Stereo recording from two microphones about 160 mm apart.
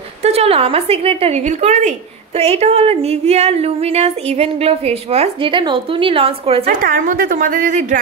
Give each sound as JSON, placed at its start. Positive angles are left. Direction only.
{"t": 0.2, "sound": "a woman's voice", "side_deg": -40}
{"t": 6.6, "sound": "a woman's voice", "side_deg": -60}